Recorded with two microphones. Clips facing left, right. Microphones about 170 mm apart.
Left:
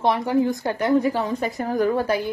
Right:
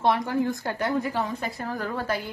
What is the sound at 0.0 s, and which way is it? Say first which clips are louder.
A woman's voice: left 4 dB; 15° left (ahead or behind).